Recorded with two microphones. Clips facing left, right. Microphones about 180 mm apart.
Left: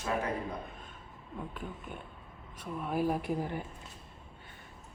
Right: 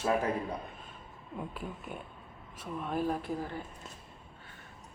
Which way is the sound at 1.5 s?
10° right (ahead or behind).